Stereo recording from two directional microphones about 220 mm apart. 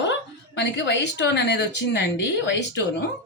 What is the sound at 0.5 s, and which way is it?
A man's voice, 55° left (ahead or behind).